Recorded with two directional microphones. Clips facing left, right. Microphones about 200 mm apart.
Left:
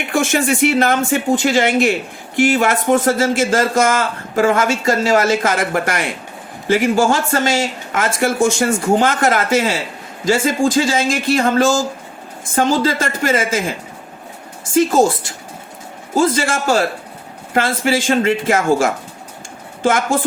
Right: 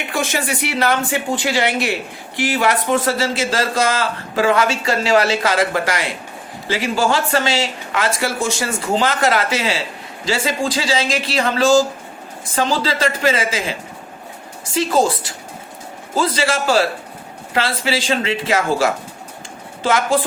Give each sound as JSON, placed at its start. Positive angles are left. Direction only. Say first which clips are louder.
{"t": 0.1, "sound": "speech", "louder": "left 6 dB", "side_deg": 50}